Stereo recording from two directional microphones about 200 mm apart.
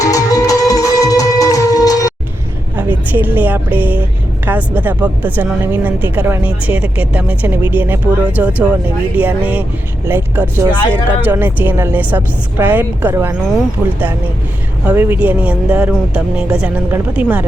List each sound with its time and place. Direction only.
0.0 s music: 15° left (ahead or behind)
3.1 s a woman's voice: 10° right (ahead or behind)
14.8 s a woman's voice: 10° right (ahead or behind)